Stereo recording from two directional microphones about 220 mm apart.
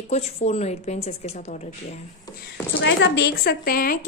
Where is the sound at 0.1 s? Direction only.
30° left (ahead or behind).